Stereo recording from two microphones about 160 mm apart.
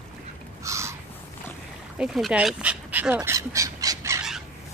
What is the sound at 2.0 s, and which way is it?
Speech, centre (ahead or behind).